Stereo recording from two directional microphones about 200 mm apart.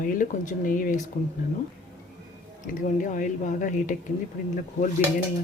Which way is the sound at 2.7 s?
40° left (ahead or behind).